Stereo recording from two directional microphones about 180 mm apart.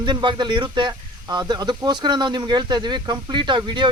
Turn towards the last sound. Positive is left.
turn(degrees=-25)  # may be behind; listen again after turning